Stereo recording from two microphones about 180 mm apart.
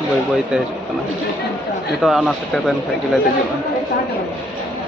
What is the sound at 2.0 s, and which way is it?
Speech, centre (ahead or behind).